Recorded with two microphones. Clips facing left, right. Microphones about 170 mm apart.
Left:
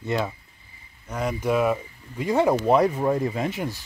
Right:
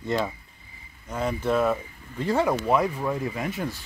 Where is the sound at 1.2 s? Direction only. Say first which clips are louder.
Left 1 dB; 10° left (ahead or behind).